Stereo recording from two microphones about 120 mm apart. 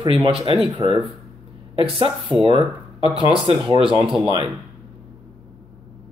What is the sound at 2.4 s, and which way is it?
Speech, 50° right (ahead or behind).